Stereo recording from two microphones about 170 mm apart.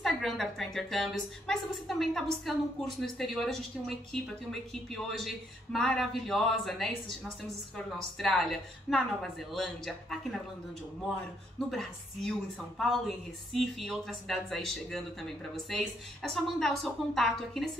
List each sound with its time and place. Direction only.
0.0 s a woman's voice: centre (ahead or behind)
5.0 s a woman's voice: centre (ahead or behind)
11.7 s a woman's voice: centre (ahead or behind)